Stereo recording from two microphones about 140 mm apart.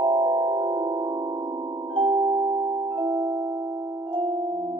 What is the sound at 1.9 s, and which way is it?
Music, 40° right (ahead or behind).